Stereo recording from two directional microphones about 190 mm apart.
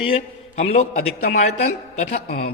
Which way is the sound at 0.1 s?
35° left (ahead or behind).